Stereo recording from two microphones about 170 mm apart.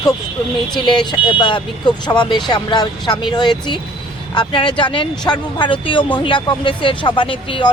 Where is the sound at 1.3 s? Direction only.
25° left (ahead or behind).